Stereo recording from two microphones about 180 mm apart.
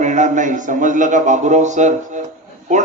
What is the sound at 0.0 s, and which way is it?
A man's voice, 40° right (ahead or behind).